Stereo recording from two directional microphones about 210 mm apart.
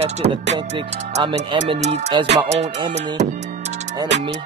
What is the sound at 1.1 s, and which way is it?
Speech, 30° right (ahead or behind).